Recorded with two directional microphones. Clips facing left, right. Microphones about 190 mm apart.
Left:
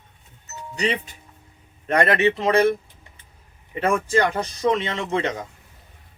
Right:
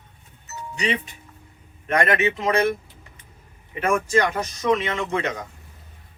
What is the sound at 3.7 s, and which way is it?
Speech, 35° left (ahead or behind).